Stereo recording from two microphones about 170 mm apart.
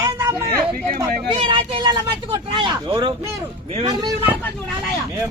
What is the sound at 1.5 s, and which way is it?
Speech, 25° right (ahead or behind).